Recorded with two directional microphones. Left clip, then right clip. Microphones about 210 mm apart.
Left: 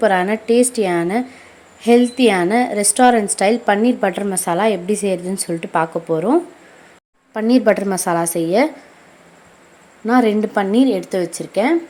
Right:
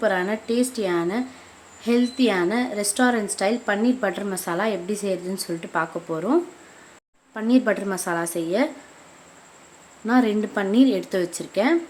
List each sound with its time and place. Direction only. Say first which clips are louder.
0.0 s a woman's voice: left 7 dB; 20° left (ahead or behind)
10.1 s a woman's voice: left 6 dB; 20° left (ahead or behind)